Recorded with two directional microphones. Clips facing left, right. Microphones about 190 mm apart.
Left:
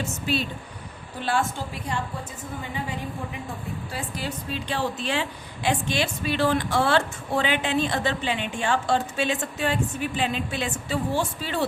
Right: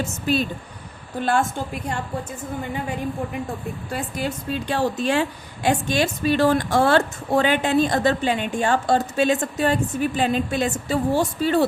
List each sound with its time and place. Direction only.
0.3 s a woman's voice: 45° right (ahead or behind)
3.9 s a woman's voice: 50° right (ahead or behind)